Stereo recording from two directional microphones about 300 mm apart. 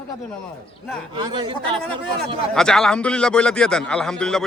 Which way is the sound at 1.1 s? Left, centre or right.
Centre.